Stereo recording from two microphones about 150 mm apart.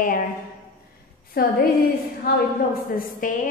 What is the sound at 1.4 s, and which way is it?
A woman's voice, 90° left.